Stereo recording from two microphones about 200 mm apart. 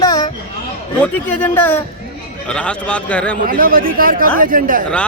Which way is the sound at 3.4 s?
45° right (ahead or behind).